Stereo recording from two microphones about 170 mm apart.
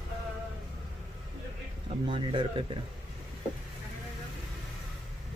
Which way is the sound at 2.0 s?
30° right (ahead or behind).